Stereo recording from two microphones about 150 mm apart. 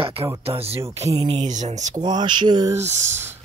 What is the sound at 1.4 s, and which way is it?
Speech, 50° right (ahead or behind).